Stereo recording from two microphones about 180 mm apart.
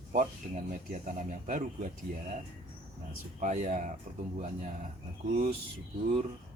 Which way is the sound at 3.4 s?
40° right (ahead or behind).